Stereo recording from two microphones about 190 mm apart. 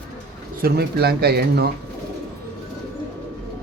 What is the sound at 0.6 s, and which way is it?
Speech, 55° right (ahead or behind).